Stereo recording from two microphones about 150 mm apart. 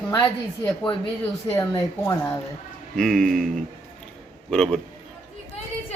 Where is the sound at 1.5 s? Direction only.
20° left (ahead or behind).